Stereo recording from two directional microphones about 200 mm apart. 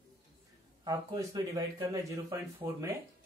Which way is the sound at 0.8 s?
20° right (ahead or behind).